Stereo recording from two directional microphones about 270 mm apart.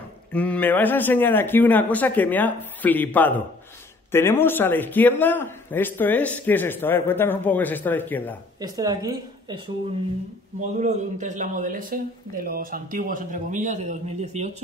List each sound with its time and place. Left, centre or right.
0.3 s a man's voice: centre
8.5 s a woman's voice: centre
10.8 s speech: right